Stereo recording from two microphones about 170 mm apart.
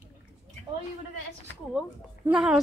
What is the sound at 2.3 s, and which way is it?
Speech, 5° right (ahead or behind).